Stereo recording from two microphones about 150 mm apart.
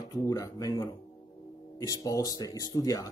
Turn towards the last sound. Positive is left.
turn(degrees=25)  # may be behind; listen again after turning